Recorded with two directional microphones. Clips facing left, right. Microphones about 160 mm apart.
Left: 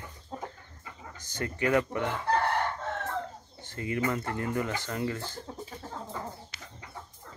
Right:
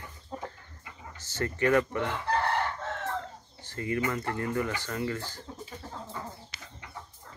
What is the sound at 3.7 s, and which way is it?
Speech, 20° left (ahead or behind).